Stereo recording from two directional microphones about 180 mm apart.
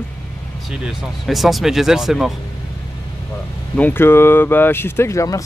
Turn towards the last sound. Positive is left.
turn(degrees=15)  # may be behind; listen again after turning